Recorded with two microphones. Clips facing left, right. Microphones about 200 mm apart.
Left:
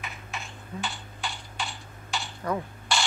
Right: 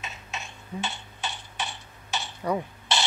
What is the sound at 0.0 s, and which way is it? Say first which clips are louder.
Beatboxing: even; 20° right (ahead or behind).